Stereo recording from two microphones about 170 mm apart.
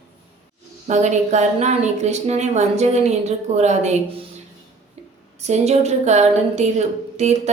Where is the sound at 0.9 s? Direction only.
45° right (ahead or behind).